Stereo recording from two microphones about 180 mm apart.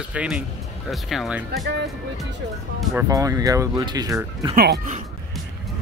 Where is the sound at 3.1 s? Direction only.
20° right (ahead or behind).